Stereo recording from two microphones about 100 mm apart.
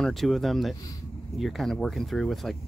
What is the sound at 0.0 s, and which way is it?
Speech, centre (ahead or behind).